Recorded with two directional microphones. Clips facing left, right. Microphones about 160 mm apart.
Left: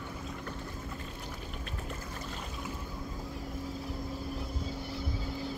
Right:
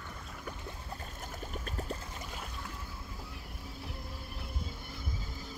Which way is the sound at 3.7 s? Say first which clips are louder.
Left 4 dB; 65° right (ahead or behind).